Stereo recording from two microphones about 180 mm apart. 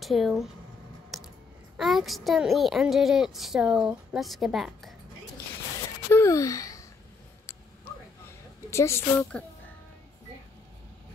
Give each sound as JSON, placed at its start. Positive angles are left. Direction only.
{"t": 0.0, "sound": "speech", "side_deg": 0}
{"t": 1.1, "sound": "typing", "side_deg": 0}
{"t": 1.8, "sound": "a woman's voice", "side_deg": 0}
{"t": 6.0, "sound": "a sound", "side_deg": 15}
{"t": 8.6, "sound": "a woman's voice", "side_deg": 15}